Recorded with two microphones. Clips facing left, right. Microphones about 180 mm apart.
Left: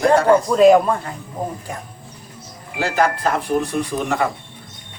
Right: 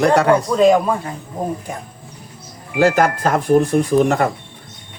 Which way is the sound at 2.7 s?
45° right (ahead or behind).